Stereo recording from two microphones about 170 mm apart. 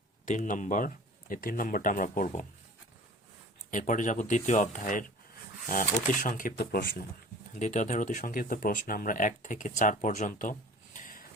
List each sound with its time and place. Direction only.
0.3 s speech: 50° left (ahead or behind)
3.7 s speech: 50° left (ahead or behind); by 7.1 s 70° left (ahead or behind)
7.5 s speech: 45° left (ahead or behind)
10.9 s a sound: 55° left (ahead or behind)